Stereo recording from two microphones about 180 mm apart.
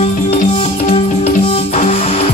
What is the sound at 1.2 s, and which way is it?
Music, 35° left (ahead or behind).